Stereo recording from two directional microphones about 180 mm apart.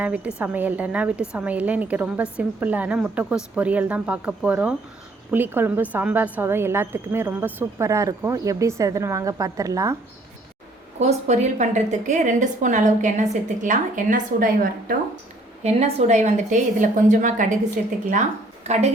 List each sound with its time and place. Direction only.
0.0 s a woman's voice: 10° right (ahead or behind)
11.0 s a woman's voice: 40° right (ahead or behind)
15.6 s a woman's voice: 40° right (ahead or behind)